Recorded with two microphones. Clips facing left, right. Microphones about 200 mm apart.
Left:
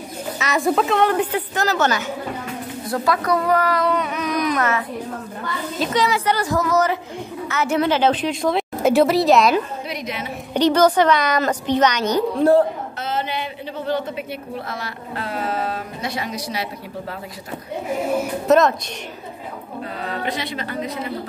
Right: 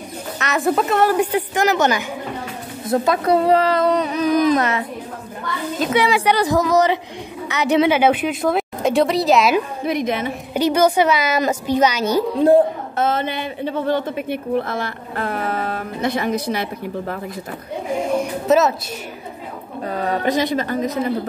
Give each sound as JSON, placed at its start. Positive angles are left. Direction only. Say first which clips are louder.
{"t": 0.4, "sound": "a woman's voice", "louder": "even", "side_deg": 0}
{"t": 5.8, "sound": "a woman's voice", "louder": "right 2 dB", "side_deg": -5}
{"t": 6.0, "sound": "a woman's voice", "louder": "right 3 dB", "side_deg": -15}
{"t": 9.8, "sound": "speech", "louder": "right 8 dB", "side_deg": -50}
{"t": 10.5, "sound": "a woman's voice", "louder": "left 1 dB", "side_deg": -10}
{"t": 12.9, "sound": "a sound", "louder": "right 6 dB", "side_deg": -50}
{"t": 14.5, "sound": "speech", "louder": "right 8 dB", "side_deg": -55}
{"t": 18.1, "sound": "a woman's voice", "louder": "even", "side_deg": 0}
{"t": 20.1, "sound": "speech", "louder": "right 8 dB", "side_deg": -45}